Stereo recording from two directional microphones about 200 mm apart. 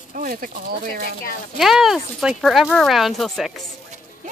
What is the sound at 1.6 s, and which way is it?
Speech, centre (ahead or behind).